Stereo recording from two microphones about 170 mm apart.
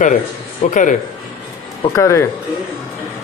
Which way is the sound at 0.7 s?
50° left (ahead or behind).